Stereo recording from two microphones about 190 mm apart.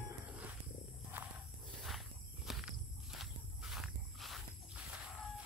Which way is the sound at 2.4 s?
Centre (ahead or behind).